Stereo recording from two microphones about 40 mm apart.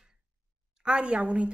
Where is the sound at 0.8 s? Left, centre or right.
Right.